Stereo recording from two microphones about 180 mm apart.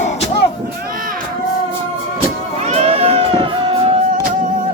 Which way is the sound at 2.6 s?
35° right (ahead or behind).